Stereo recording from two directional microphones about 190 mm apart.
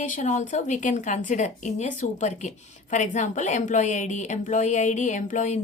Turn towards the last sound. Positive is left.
turn(degrees=40)  # may be behind; listen again after turning